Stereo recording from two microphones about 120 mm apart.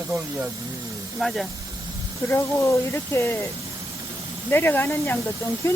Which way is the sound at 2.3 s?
25° left (ahead or behind).